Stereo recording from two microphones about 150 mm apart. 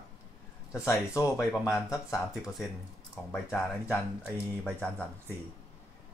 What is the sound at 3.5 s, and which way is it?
Speech, 15° left (ahead or behind).